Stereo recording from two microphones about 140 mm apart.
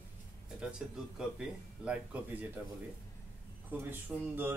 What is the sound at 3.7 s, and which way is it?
Speech, 15° right (ahead or behind).